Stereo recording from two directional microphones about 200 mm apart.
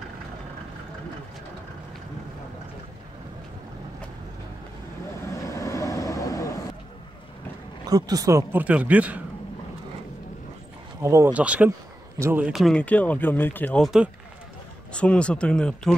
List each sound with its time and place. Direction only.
5.5 s vehicle: 15° left (ahead or behind)
7.8 s speech: 20° right (ahead or behind)
11.0 s speech: 15° right (ahead or behind); by 16.0 s 5° left (ahead or behind)